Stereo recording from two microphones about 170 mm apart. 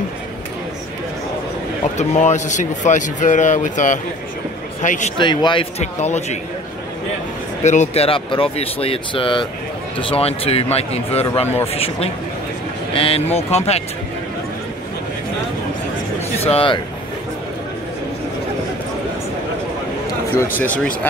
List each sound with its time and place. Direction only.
2.0 s speech: 45° left (ahead or behind)
5.1 s speech: 25° left (ahead or behind)
7.6 s speech: 45° left (ahead or behind)
16.3 s speech: 35° left (ahead or behind)
20.5 s speech: 10° left (ahead or behind)